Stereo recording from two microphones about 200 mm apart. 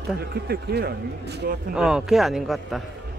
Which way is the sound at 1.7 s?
5° right (ahead or behind).